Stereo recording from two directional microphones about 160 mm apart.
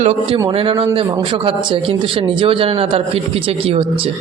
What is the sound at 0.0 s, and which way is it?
Speech, 40° right (ahead or behind).